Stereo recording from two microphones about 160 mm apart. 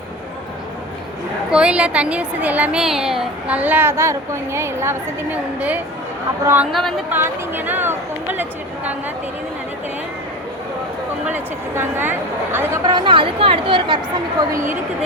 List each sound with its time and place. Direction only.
1.5 s a woman's voice: 5° right (ahead or behind)
6.7 s speech: centre (ahead or behind)
7.1 s a woman's voice: 10° right (ahead or behind)
11.3 s a woman's voice: 10° right (ahead or behind)
12.9 s a woman's voice: 30° right (ahead or behind)